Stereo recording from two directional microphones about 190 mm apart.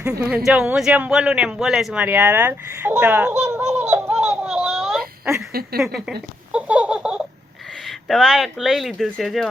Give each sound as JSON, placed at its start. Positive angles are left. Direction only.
{"t": 0.0, "sound": "speech", "side_deg": -15}
{"t": 0.4, "sound": "speech", "side_deg": -5}
{"t": 5.8, "sound": "a sound", "side_deg": -5}
{"t": 7.9, "sound": "speech", "side_deg": 0}